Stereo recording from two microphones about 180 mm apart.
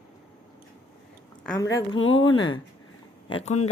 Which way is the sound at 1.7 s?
25° left (ahead or behind).